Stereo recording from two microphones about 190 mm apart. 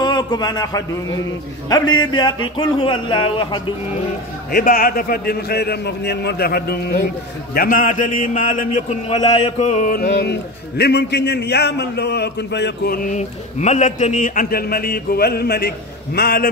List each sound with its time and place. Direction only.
0.0 s a man's voice: 20° left (ahead or behind)
2.0 s speech: 25° left (ahead or behind)
4.5 s a man's voice: 50° left (ahead or behind)